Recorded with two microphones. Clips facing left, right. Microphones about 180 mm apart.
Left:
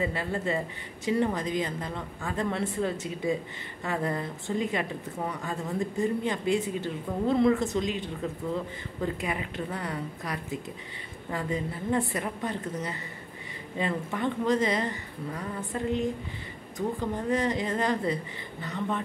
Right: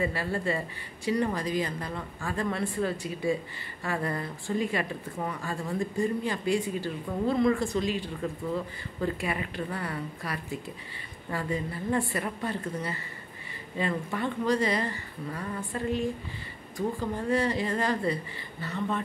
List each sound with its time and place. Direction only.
0.0 s a woman's voice: 20° left (ahead or behind)